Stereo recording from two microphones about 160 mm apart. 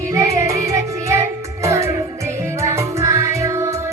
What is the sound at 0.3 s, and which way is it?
Music, 20° right (ahead or behind).